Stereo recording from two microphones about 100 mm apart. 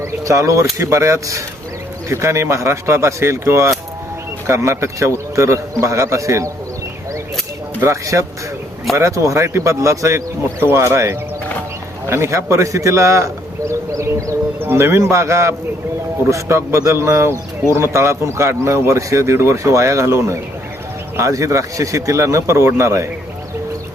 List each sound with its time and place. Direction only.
0.0 s speech: 30° right (ahead or behind)
7.8 s a man's voice: 30° right (ahead or behind)